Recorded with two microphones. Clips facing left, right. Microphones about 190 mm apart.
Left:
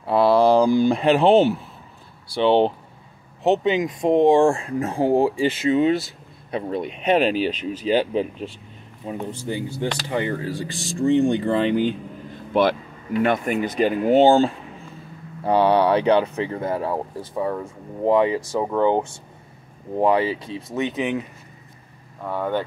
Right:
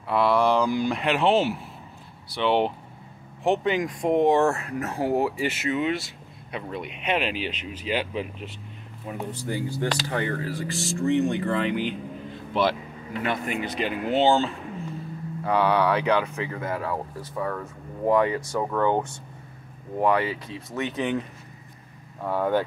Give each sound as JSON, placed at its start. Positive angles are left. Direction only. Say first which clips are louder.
{"t": 0.0, "sound": "speech", "louder": "left 5 dB", "side_deg": 35}
{"t": 9.0, "sound": "speech", "louder": "left 3 dB", "side_deg": 25}
{"t": 12.6, "sound": "speech", "louder": "left 5 dB", "side_deg": 55}
{"t": 15.4, "sound": "speech", "louder": "left 5 dB", "side_deg": 30}
{"t": 22.2, "sound": "speech", "louder": "right 1 dB", "side_deg": -10}